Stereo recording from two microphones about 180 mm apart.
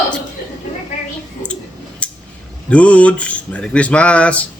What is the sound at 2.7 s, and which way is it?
Speech, 5° left (ahead or behind).